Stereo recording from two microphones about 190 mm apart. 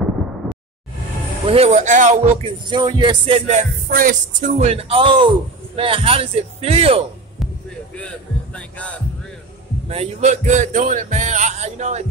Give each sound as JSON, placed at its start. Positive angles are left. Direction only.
{"t": 1.5, "sound": "a man's voice", "side_deg": -35}
{"t": 2.4, "sound": "a man's voice", "side_deg": -25}
{"t": 8.5, "sound": "heart sounds", "side_deg": 5}
{"t": 9.8, "sound": "a man's voice", "side_deg": -35}